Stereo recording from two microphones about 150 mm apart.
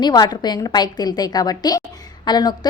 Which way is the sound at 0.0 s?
30° left (ahead or behind).